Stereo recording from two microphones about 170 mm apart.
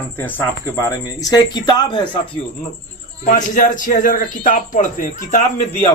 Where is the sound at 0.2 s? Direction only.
10° left (ahead or behind).